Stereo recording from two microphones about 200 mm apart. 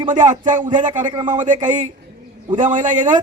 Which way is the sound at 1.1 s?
25° right (ahead or behind).